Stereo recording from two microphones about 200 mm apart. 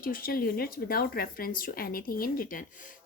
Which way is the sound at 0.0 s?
45° left (ahead or behind).